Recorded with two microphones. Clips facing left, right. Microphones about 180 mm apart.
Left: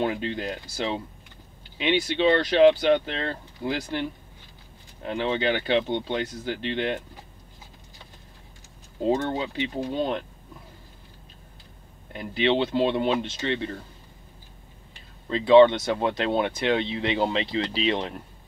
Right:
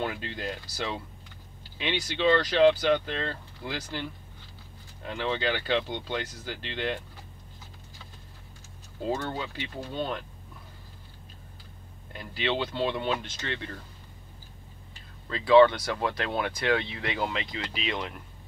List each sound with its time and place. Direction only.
0.0 s speech: 20° left (ahead or behind)
1.8 s speech: 20° left (ahead or behind)
5.0 s speech: 20° left (ahead or behind)
9.0 s speech: 20° left (ahead or behind)
12.1 s speech: 20° left (ahead or behind)
15.2 s speech: 20° left (ahead or behind)